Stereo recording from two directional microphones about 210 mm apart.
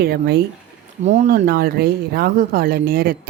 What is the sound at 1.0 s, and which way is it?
Speech, 30° right (ahead or behind).